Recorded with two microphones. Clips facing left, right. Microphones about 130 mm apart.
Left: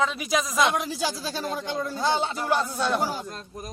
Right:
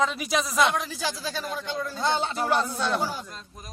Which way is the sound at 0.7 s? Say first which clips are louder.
Left 2 dB; 15° left (ahead or behind).